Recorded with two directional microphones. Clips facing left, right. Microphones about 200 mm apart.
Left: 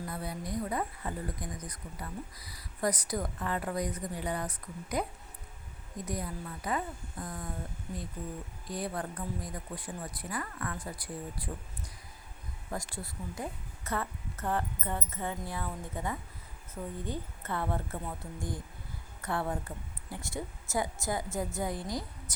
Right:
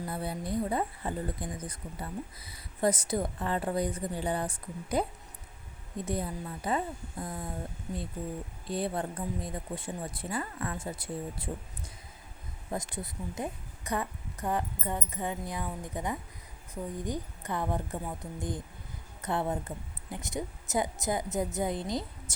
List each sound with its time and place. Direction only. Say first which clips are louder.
0.1 s speech: right 5 dB; 30° right (ahead or behind)
6.1 s speech: right 3 dB; 30° right (ahead or behind)
8.6 s speech: right 4 dB; 25° right (ahead or behind)
12.7 s a woman's voice: right 3 dB; 20° right (ahead or behind)